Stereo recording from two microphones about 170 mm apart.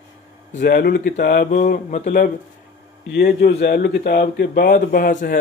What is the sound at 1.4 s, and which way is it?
Mantra, 50° left (ahead or behind).